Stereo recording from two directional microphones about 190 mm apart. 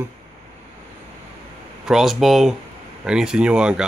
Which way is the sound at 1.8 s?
Centre (ahead or behind).